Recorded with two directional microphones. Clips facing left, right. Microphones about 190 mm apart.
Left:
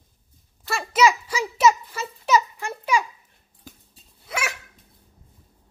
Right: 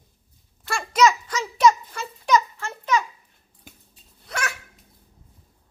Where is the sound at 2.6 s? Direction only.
10° left (ahead or behind).